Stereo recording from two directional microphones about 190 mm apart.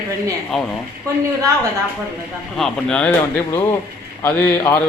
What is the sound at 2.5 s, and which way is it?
Speech, 5° left (ahead or behind).